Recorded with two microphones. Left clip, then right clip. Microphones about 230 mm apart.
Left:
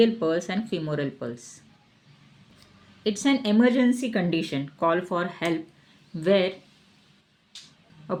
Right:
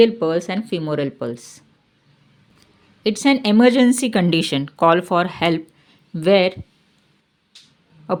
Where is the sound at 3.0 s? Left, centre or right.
Right.